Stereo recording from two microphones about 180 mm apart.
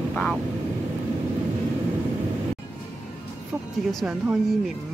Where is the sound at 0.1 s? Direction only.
5° left (ahead or behind).